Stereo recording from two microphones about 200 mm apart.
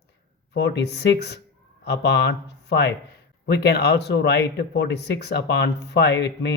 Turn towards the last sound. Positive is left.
turn(degrees=60)  # may be behind; listen again after turning